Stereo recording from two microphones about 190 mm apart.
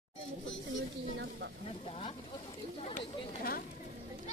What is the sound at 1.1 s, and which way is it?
Speech, 65° right (ahead or behind).